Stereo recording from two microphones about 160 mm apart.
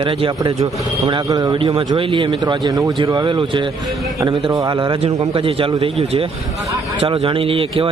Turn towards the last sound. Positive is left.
turn(degrees=-35)  # may be behind; listen again after turning